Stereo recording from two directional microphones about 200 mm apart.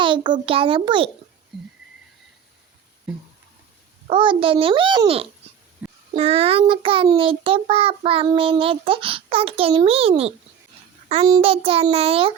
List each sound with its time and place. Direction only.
0.0 s a child's voice: 25° right (ahead or behind)
0.4 s child singing: 25° right (ahead or behind)
1.5 s a sound: centre (ahead or behind)
4.0 s child singing: 25° right (ahead or behind)
5.8 s music: 10° right (ahead or behind)
6.1 s child singing: 30° right (ahead or behind)